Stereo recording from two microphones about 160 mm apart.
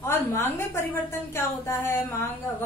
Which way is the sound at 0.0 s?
15° left (ahead or behind).